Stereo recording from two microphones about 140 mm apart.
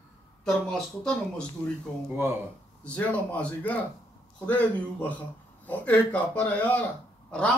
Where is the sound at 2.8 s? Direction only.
10° left (ahead or behind).